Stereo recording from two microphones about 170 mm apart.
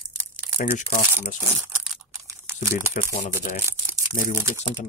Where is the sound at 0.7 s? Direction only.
50° left (ahead or behind).